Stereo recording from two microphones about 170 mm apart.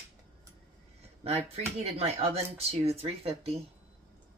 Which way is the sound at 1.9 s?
35° right (ahead or behind).